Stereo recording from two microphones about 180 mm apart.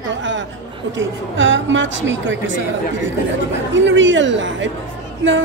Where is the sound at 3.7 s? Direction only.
90° right.